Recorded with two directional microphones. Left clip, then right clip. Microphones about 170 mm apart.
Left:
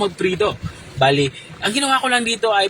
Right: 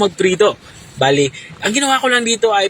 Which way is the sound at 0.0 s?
25° right (ahead or behind).